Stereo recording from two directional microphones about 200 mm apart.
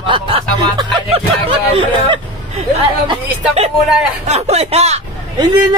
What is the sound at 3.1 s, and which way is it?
Speech, 30° right (ahead or behind).